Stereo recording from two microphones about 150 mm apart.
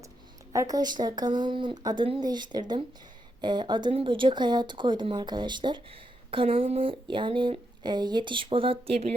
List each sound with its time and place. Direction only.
0.5 s speech: 25° right (ahead or behind); by 9.1 s 45° right (ahead or behind)